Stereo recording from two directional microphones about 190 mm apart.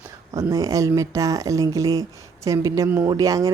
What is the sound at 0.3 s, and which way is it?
Speech, 20° right (ahead or behind).